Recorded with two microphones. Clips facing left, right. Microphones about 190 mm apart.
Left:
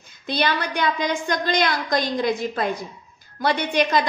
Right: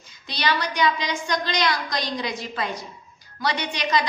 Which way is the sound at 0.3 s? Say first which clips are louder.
Left 3 dB; 55° left (ahead or behind).